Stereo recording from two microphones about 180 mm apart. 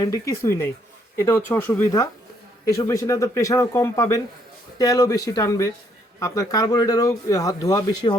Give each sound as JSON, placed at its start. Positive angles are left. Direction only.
{"t": 0.0, "sound": "a man's voice", "side_deg": 15}